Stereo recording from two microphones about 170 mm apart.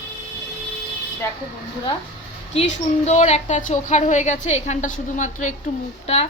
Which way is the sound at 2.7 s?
45° left (ahead or behind).